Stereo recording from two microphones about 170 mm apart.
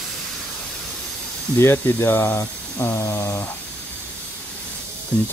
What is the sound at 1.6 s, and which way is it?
Speech, 15° left (ahead or behind).